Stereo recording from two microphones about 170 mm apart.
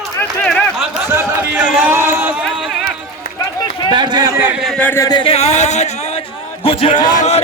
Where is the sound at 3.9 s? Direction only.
25° right (ahead or behind).